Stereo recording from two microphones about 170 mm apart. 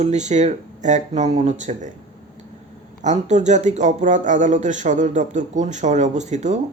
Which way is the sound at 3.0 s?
45° right (ahead or behind).